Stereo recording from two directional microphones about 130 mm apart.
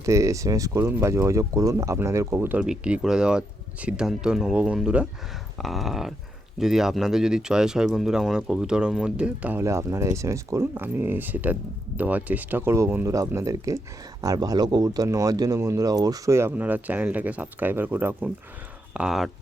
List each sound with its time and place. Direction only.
0.0 s speech: 25° right (ahead or behind)
2.6 s speech: 10° right (ahead or behind)